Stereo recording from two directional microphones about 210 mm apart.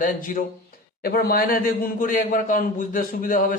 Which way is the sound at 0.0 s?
40° left (ahead or behind).